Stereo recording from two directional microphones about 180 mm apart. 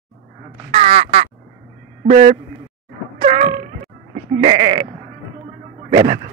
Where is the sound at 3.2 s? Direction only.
30° right (ahead or behind).